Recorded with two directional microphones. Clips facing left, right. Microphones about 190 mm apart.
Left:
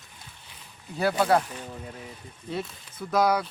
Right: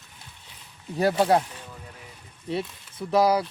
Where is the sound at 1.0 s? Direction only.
40° right (ahead or behind).